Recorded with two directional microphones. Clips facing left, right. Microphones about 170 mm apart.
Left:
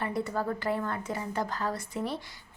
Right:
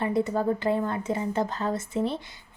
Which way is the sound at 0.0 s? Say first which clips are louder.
Right 6 dB; 20° right (ahead or behind).